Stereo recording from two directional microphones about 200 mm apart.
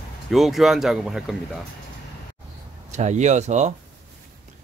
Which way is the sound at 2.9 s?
35° right (ahead or behind).